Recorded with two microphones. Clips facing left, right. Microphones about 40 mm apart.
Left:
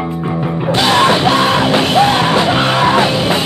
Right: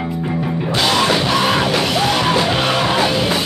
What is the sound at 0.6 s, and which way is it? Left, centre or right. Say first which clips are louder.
Music: left 5 dB; left.